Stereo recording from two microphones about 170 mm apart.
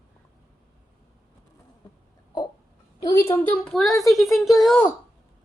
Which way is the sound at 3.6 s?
5° left (ahead or behind).